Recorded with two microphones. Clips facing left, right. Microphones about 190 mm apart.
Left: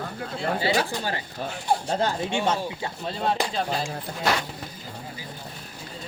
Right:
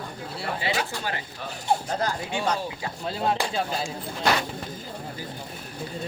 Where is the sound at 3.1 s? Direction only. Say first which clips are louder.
Right 1 dB; 5° right (ahead or behind).